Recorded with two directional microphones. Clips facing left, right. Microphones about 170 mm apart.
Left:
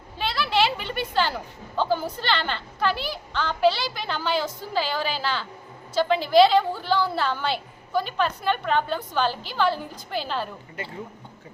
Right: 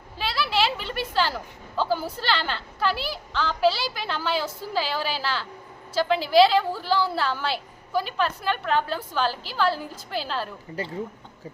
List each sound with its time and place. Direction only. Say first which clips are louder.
0.2 s a woman's voice: left 2 dB; 5° right (ahead or behind)
10.8 s speech: right 5 dB; 35° right (ahead or behind)